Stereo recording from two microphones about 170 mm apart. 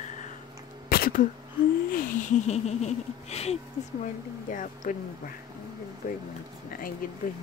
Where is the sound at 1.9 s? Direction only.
50° left (ahead or behind).